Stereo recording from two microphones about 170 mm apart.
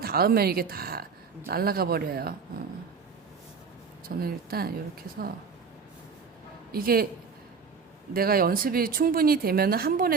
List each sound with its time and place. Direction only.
0.0 s speech: 60° right (ahead or behind)
4.0 s speech: 60° right (ahead or behind)
6.7 s speech: 60° right (ahead or behind)
8.1 s speech: 60° right (ahead or behind)